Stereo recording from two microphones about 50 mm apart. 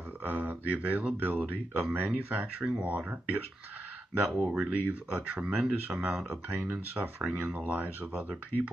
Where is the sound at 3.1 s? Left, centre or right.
Right.